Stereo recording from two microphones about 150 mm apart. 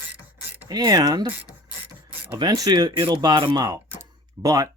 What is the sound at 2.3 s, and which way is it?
Speech, 25° right (ahead or behind).